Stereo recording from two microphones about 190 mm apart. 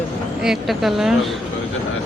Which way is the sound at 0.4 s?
Centre (ahead or behind).